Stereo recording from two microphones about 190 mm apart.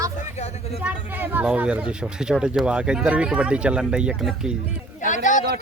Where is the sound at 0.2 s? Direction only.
35° left (ahead or behind).